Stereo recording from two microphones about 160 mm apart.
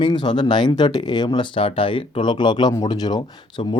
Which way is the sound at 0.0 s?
30° left (ahead or behind).